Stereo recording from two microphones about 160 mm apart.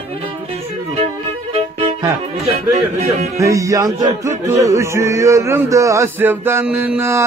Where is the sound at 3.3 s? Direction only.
20° right (ahead or behind).